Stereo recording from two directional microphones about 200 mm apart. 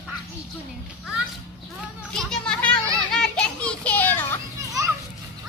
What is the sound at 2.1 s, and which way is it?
Children playing, 5° left (ahead or behind).